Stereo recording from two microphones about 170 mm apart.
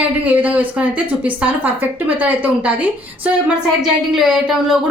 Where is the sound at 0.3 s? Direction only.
10° right (ahead or behind).